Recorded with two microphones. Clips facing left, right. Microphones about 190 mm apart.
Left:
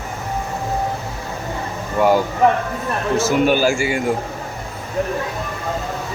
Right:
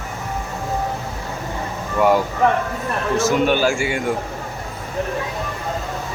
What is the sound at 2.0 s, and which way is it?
Speech, centre (ahead or behind).